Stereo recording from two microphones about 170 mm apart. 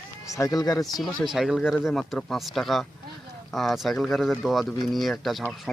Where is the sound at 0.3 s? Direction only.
20° left (ahead or behind).